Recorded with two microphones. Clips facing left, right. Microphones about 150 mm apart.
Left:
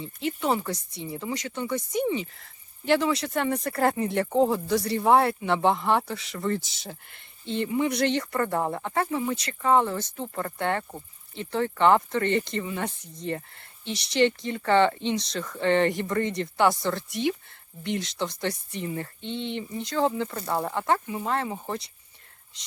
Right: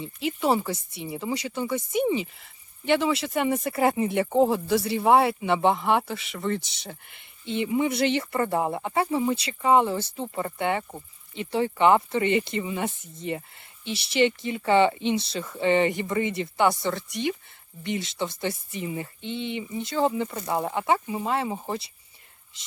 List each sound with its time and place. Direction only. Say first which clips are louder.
0.3 s speech: right 2 dB; 15° right (ahead or behind)
2.0 s speech: right 2 dB; 20° right (ahead or behind)
2.8 s speech: even; centre (ahead or behind)